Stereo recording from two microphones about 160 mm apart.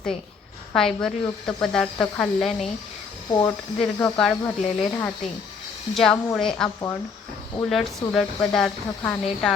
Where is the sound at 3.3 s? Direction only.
25° left (ahead or behind).